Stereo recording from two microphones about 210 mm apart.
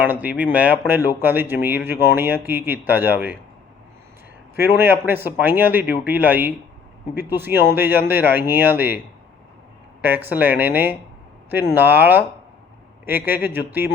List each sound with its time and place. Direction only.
0.0 s speech: 10° right (ahead or behind)
4.5 s speech: 10° right (ahead or behind)
10.2 s speech: 10° right (ahead or behind)